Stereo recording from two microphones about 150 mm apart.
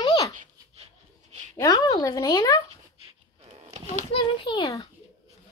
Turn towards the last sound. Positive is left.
turn(degrees=25)  # may be behind; listen again after turning